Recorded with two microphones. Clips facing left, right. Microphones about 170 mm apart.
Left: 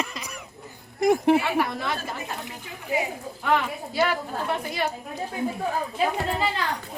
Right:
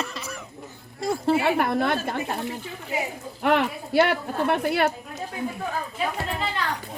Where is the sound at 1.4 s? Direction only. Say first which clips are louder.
Right 4 dB; 55° right (ahead or behind).